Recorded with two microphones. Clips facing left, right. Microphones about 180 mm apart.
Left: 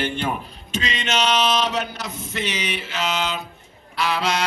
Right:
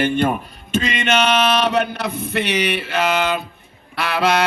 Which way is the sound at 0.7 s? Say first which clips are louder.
Right 6 dB; 55° right (ahead or behind).